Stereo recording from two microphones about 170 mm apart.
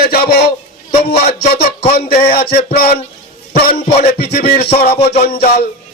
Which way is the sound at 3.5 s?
65° left (ahead or behind).